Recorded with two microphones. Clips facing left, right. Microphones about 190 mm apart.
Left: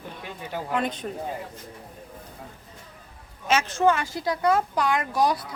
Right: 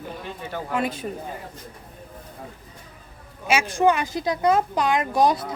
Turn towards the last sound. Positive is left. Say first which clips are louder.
# right 4 dB
turn(degrees=-20)  # may be behind; listen again after turning